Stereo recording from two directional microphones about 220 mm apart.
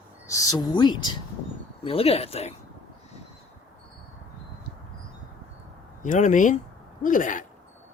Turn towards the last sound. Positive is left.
turn(degrees=35)  # may be behind; listen again after turning